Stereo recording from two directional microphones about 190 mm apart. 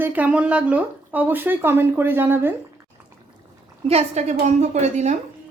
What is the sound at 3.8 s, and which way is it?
A woman's voice, 35° right (ahead or behind).